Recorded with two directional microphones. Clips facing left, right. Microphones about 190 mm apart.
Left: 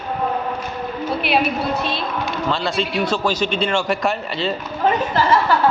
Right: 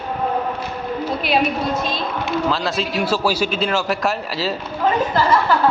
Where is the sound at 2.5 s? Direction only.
Centre (ahead or behind).